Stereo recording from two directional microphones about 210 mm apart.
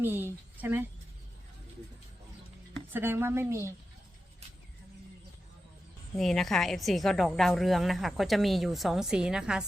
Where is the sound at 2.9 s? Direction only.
10° right (ahead or behind).